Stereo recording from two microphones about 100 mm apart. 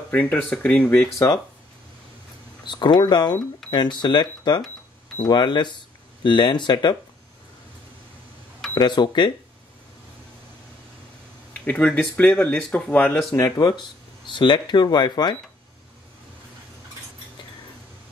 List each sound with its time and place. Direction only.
0.1 s speech: 15° left (ahead or behind)
2.6 s speech: 50° left (ahead or behind)
3.6 s cash register: 5° left (ahead or behind)
4.0 s speech: 50° left (ahead or behind)
8.7 s speech: 50° left (ahead or behind)
11.6 s speech: 10° left (ahead or behind)
13.6 s speech: 45° left (ahead or behind)